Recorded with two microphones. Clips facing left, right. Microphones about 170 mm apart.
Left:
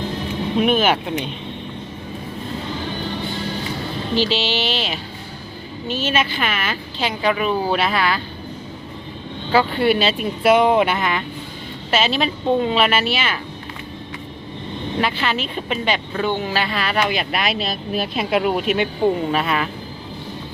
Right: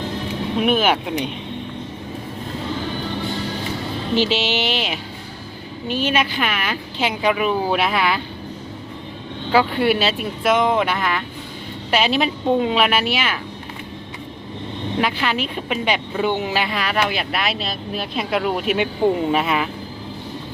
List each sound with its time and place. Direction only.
0.6 s a woman's voice: 10° right (ahead or behind)
4.1 s a woman's voice: 20° right (ahead or behind)
9.5 s a woman's voice: 10° right (ahead or behind)
10.7 s speech: 10° left (ahead or behind)
11.9 s a woman's voice: 15° right (ahead or behind)
14.9 s speech: 10° right (ahead or behind); by 18.6 s 5° left (ahead or behind)
18.6 s a woman's voice: 5° right (ahead or behind)